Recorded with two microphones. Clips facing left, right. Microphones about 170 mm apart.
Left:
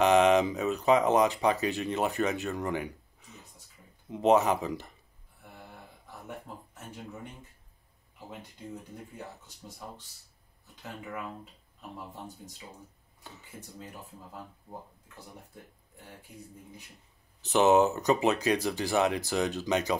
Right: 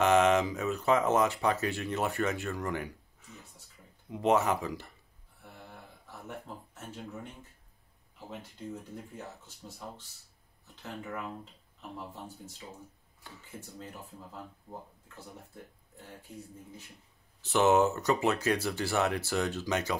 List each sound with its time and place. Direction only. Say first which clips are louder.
0.0 s speech: left 2 dB; 20° left (ahead or behind)
13.2 s speech: even; 15° left (ahead or behind)
17.4 s speech: left 2 dB; 20° left (ahead or behind)